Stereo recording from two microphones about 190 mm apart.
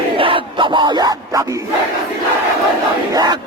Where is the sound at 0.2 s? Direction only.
25° right (ahead or behind).